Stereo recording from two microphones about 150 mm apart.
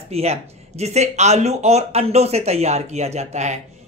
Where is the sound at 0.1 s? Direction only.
45° right (ahead or behind).